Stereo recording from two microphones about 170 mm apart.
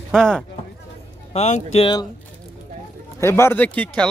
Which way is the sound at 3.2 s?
15° left (ahead or behind).